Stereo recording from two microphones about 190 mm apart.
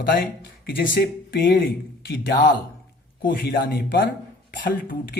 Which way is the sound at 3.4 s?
60° left (ahead or behind).